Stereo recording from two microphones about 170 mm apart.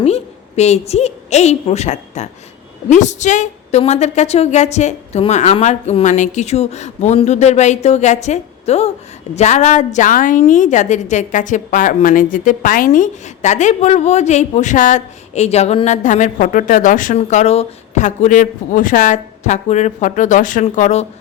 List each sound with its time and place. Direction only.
0.0 s a woman's voice: 40° left (ahead or behind)